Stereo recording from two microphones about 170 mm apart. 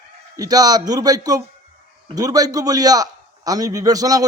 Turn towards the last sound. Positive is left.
turn(degrees=-20)  # may be behind; listen again after turning